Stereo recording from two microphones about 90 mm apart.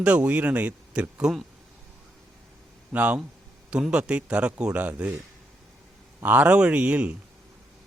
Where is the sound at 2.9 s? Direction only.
15° right (ahead or behind).